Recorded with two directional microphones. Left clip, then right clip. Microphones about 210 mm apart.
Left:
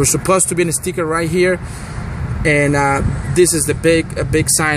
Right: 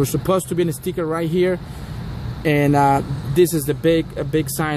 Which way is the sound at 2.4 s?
10° right (ahead or behind).